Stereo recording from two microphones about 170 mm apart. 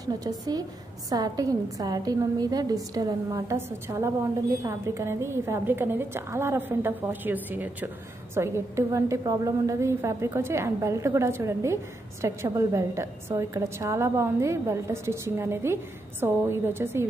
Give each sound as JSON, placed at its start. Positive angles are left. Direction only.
{"t": 0.0, "sound": "a woman's voice", "side_deg": -20}